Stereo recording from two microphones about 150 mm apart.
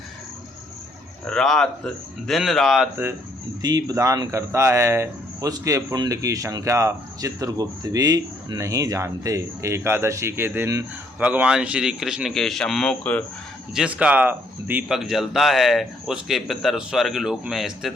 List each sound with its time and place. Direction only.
1.3 s speech: 5° left (ahead or behind)
3.6 s speech: 25° right (ahead or behind); by 13.2 s 10° left (ahead or behind)
13.7 s speech: 5° right (ahead or behind)